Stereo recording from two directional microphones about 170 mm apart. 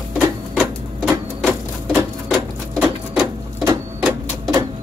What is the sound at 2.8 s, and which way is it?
Sewing machine, 10° right (ahead or behind).